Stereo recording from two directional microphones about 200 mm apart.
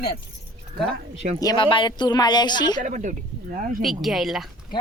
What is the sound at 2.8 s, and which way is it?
Speech, 40° right (ahead or behind).